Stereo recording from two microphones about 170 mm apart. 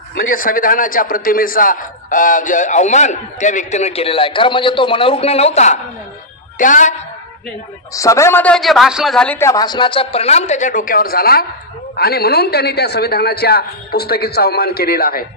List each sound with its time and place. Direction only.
0.4 s a man's voice: 55° left (ahead or behind)
7.9 s a man's voice: 20° left (ahead or behind)
9.5 s a woman's voice: 25° left (ahead or behind); by 15.2 s 65° left (ahead or behind)